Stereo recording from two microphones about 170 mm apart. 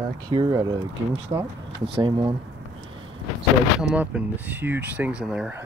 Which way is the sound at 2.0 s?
30° right (ahead or behind).